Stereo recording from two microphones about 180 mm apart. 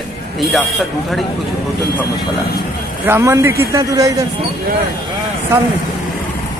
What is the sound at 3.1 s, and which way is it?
A man's voice, 15° right (ahead or behind).